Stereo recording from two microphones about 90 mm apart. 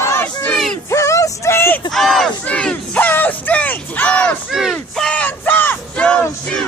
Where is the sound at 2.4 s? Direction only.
15° left (ahead or behind).